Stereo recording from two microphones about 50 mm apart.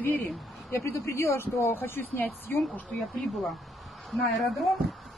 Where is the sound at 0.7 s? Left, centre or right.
Left.